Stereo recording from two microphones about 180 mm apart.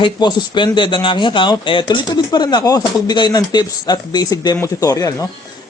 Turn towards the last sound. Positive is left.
turn(degrees=20)  # may be behind; listen again after turning